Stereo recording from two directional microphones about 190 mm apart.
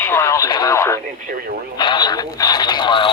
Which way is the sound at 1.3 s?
45° right (ahead or behind).